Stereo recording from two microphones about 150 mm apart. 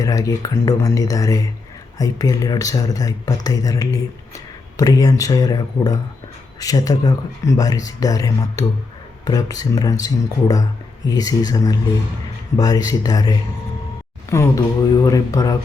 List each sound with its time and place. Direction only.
0.0 s speech: 20° left (ahead or behind)